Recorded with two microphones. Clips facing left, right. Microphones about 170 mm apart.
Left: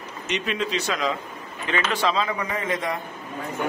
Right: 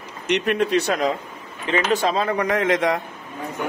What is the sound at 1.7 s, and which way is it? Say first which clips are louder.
Speech: right 4 dB; 40° right (ahead or behind).